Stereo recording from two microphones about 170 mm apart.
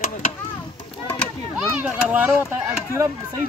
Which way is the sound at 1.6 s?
10° right (ahead or behind).